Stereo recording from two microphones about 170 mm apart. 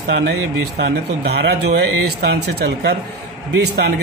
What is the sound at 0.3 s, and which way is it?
A man's voice, 85° right.